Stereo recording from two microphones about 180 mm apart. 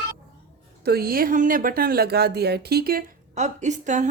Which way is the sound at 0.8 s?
55° right (ahead or behind).